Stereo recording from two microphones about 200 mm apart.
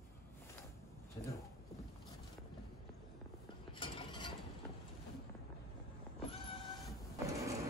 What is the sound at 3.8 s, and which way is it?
Mechanisms, 25° left (ahead or behind).